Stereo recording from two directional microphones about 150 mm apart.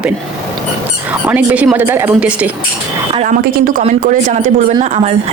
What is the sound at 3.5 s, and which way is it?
Speech, 70° right (ahead or behind).